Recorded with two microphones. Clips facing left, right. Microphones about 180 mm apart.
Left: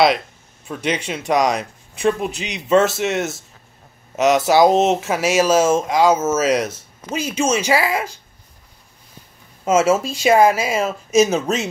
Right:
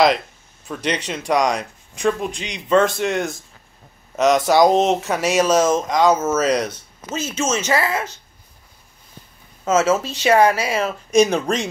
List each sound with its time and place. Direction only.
0.8 s speech: 5° left (ahead or behind)
4.5 s speech: 5° left (ahead or behind)
9.7 s speech: 10° left (ahead or behind)